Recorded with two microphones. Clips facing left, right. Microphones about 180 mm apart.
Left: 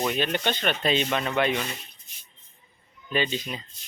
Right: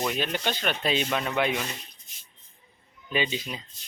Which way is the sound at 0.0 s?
Centre (ahead or behind).